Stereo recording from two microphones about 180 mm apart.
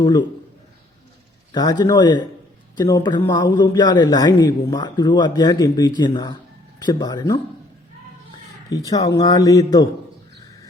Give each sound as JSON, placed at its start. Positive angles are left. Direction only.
{"t": 0.0, "sound": "a man's voice", "side_deg": 25}
{"t": 1.5, "sound": "a man's voice", "side_deg": 20}